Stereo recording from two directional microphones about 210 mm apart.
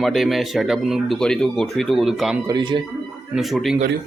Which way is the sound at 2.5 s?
20° right (ahead or behind).